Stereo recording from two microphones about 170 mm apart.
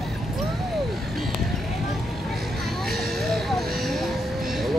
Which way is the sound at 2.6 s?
Centre (ahead or behind).